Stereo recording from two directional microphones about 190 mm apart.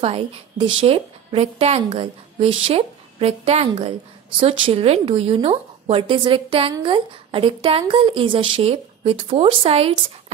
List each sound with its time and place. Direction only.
0.0 s a woman's voice: 30° right (ahead or behind)